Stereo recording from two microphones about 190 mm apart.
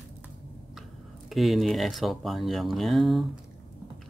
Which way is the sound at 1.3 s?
Centre (ahead or behind).